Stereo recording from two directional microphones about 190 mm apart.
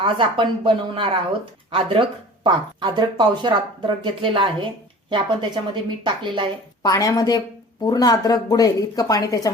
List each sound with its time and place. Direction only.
0.0 s speech: 25° right (ahead or behind)
6.8 s speech: 20° left (ahead or behind)